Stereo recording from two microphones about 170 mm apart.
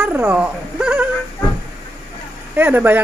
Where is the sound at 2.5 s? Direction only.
10° right (ahead or behind).